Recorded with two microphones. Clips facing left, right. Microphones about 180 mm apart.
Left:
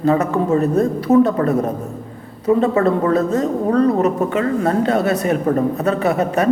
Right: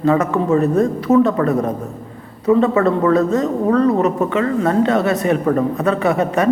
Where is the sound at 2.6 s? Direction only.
35° left (ahead or behind).